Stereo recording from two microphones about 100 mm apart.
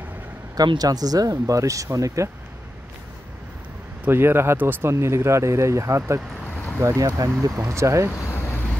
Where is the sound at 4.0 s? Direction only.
25° right (ahead or behind).